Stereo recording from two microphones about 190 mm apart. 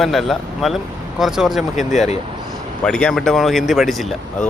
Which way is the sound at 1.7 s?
40° left (ahead or behind).